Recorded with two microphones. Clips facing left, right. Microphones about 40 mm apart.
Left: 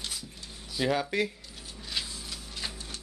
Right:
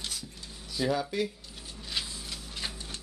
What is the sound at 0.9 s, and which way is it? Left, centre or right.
Speech, left.